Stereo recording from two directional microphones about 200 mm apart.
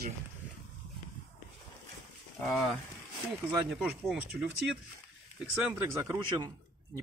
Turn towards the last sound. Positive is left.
turn(degrees=-20)  # may be behind; listen again after turning